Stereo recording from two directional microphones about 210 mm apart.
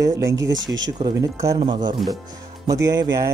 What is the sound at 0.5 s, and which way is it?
Speech, 60° right (ahead or behind).